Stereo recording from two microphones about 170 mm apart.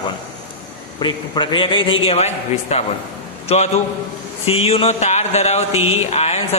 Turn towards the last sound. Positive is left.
turn(degrees=40)  # may be behind; listen again after turning